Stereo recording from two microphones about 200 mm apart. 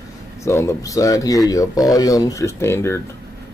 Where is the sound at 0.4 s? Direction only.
15° left (ahead or behind).